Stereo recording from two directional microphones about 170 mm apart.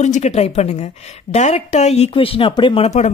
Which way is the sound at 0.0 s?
40° left (ahead or behind).